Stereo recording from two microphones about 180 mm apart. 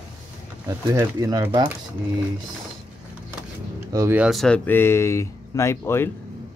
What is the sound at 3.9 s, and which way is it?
Speech, 15° right (ahead or behind).